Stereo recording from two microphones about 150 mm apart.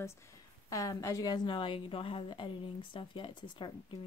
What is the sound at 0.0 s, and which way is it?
A woman's voice, 20° left (ahead or behind).